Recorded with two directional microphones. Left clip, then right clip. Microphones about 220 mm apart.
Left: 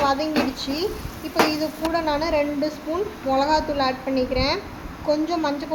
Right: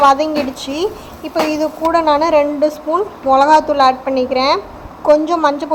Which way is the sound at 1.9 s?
20° right (ahead or behind).